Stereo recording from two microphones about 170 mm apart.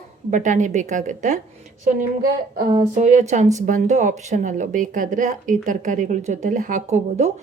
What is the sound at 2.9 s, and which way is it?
Speech, 45° right (ahead or behind).